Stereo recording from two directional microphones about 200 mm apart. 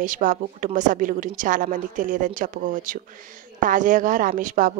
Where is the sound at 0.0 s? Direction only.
40° right (ahead or behind).